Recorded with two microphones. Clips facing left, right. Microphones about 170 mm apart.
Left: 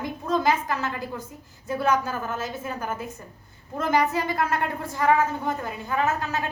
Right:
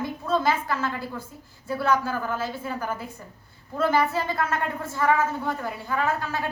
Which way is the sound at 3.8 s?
15° left (ahead or behind).